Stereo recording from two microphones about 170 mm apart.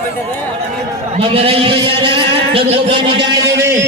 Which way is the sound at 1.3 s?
35° right (ahead or behind).